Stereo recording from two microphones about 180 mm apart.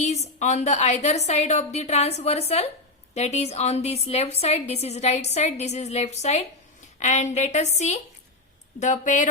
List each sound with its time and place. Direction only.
0.0 s a woman's voice: 40° left (ahead or behind)